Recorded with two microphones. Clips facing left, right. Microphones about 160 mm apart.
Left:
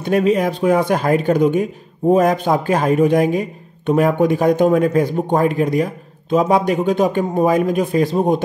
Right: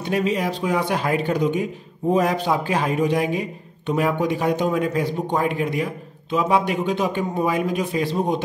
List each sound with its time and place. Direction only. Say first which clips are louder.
0.0 s a man's voice: left 6 dB; 50° left (ahead or behind)